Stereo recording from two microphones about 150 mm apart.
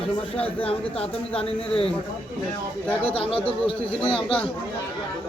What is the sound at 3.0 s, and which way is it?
Speech, 40° left (ahead or behind).